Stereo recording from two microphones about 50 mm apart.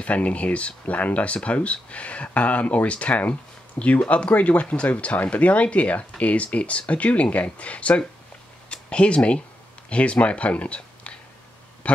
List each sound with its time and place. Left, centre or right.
0.0 s speech: left
8.6 s a sound: left
9.8 s speech: left